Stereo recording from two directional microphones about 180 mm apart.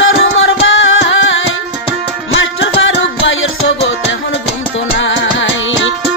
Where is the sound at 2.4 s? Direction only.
90° left.